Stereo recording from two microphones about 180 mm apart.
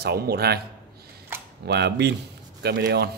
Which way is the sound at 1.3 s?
10° right (ahead or behind).